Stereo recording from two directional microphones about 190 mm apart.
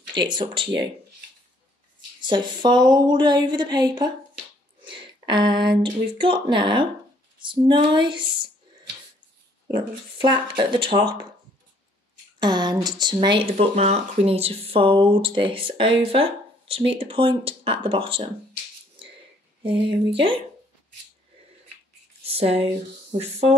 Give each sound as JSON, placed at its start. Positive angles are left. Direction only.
{"t": 0.1, "sound": "speech", "side_deg": -25}
{"t": 2.2, "sound": "speech", "side_deg": -25}
{"t": 10.1, "sound": "speech", "side_deg": -25}
{"t": 12.4, "sound": "a sound", "side_deg": -20}
{"t": 12.8, "sound": "speech", "side_deg": -25}
{"t": 19.6, "sound": "speech", "side_deg": -25}
{"t": 22.2, "sound": "a sound", "side_deg": -30}